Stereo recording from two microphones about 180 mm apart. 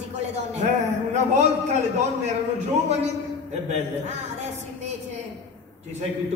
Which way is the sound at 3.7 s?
40° right (ahead or behind).